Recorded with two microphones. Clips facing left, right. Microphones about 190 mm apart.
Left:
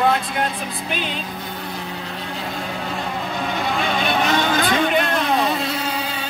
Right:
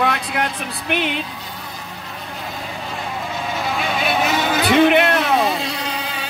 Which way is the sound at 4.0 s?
5° right (ahead or behind).